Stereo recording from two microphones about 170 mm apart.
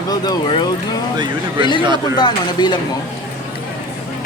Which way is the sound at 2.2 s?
25° left (ahead or behind).